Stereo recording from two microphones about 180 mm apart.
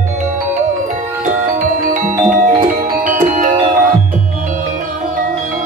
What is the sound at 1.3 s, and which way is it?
Music, 45° right (ahead or behind).